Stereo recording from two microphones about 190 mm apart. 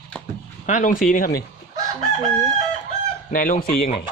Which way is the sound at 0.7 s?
45° left (ahead or behind).